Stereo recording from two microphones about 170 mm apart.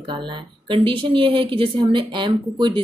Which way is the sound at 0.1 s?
30° right (ahead or behind).